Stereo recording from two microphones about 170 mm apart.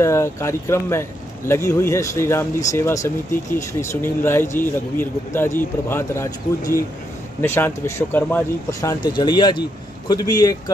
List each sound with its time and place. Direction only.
0.0 s a man's voice: 15° left (ahead or behind)